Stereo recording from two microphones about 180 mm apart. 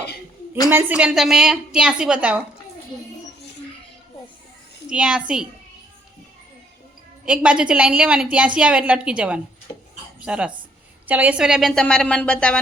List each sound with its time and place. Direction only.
0.7 s a woman's voice: 10° right (ahead or behind)
4.9 s a woman's voice: 5° right (ahead or behind)
7.3 s a woman's voice: 5° right (ahead or behind)
9.7 s a sound: 20° left (ahead or behind)
10.2 s a woman's voice: 5° right (ahead or behind)